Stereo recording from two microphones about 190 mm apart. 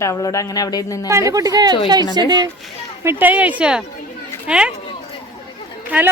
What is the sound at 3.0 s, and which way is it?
Speech, 10° right (ahead or behind).